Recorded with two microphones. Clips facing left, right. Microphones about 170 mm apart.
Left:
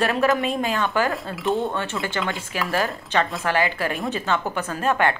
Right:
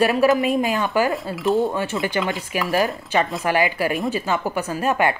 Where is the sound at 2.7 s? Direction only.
15° right (ahead or behind).